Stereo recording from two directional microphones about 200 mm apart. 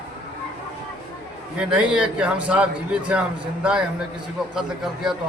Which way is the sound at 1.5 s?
5° right (ahead or behind).